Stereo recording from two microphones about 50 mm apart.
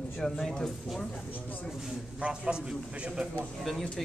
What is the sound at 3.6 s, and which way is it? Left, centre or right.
Speech, centre.